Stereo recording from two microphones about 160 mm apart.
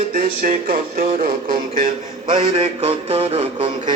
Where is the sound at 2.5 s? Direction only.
35° right (ahead or behind).